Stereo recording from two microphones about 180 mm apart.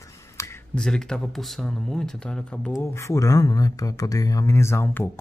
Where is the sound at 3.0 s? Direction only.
15° left (ahead or behind).